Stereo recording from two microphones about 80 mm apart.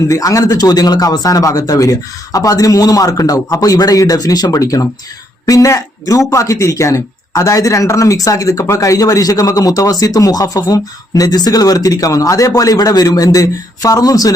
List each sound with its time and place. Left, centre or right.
0.1 s speech: left